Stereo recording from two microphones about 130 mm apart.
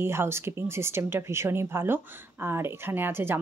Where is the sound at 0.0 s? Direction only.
20° right (ahead or behind).